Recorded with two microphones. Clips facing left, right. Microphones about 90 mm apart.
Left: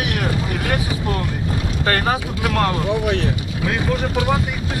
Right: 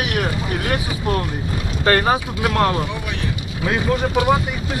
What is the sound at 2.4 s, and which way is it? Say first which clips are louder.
Speech: right 1 dB; 25° right (ahead or behind).